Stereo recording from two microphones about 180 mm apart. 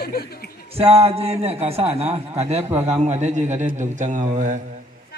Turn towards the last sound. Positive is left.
turn(degrees=-45)  # may be behind; listen again after turning